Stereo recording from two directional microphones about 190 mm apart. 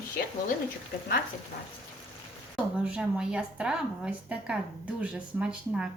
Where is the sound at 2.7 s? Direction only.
5° right (ahead or behind).